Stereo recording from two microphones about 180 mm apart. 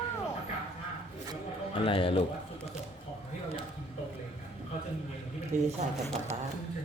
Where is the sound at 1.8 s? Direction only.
30° left (ahead or behind).